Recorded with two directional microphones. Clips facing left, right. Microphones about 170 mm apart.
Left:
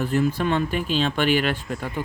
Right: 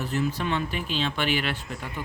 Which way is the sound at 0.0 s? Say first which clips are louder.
Left 6 dB; 50° left (ahead or behind).